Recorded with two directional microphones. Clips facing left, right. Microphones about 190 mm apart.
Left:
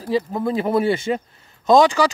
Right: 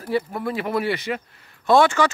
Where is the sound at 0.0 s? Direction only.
20° left (ahead or behind).